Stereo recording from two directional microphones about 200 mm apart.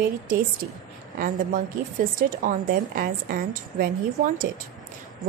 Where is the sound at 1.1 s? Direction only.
45° right (ahead or behind).